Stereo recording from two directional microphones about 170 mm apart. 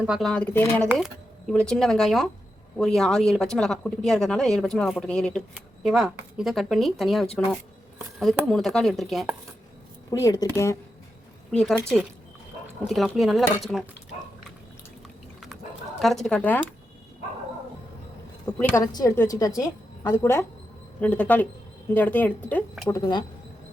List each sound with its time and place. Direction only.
0.0 s speech: centre (ahead or behind)
0.9 s speech: centre (ahead or behind)
8.4 s speech: centre (ahead or behind)
10.1 s speech: 20° left (ahead or behind)
11.5 s speech: centre (ahead or behind)
16.0 s speech: centre (ahead or behind)
18.7 s a woman's voice: 20° left (ahead or behind)
22.9 s speech: 25° left (ahead or behind)